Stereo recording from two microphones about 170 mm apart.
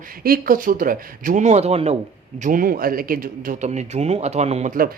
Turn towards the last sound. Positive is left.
turn(degrees=-40)  # may be behind; listen again after turning